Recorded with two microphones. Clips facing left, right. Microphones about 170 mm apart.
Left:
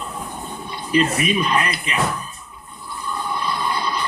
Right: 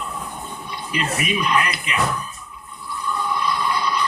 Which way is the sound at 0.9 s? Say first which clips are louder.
Left 6 dB; 30° left (ahead or behind).